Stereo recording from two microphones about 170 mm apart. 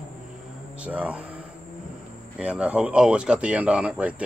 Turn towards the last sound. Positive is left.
turn(degrees=-5)  # may be behind; listen again after turning